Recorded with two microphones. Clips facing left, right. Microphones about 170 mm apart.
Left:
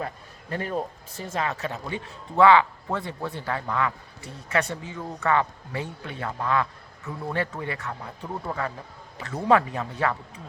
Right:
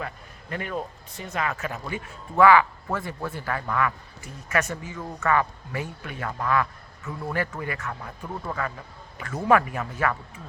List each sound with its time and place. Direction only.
0.5 s a man's voice: 35° left (ahead or behind)